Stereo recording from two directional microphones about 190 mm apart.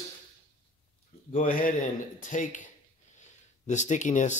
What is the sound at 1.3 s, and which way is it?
Speech, 45° left (ahead or behind).